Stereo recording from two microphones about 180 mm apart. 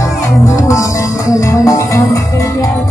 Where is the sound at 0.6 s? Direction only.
20° left (ahead or behind).